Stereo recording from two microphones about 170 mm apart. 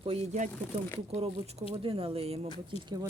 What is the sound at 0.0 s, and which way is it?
Speech, 35° right (ahead or behind).